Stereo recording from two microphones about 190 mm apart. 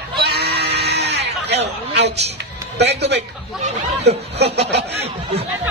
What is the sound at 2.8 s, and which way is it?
Speech, 60° right (ahead or behind).